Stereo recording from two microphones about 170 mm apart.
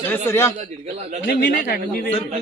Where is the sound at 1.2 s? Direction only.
65° left (ahead or behind).